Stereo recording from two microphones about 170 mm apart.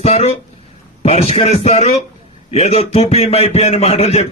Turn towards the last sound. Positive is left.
turn(degrees=40)  # may be behind; listen again after turning